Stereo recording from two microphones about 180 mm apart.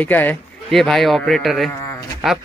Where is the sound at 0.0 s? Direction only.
10° left (ahead or behind).